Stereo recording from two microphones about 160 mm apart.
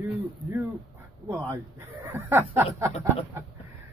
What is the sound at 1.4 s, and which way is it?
Speech, 15° right (ahead or behind).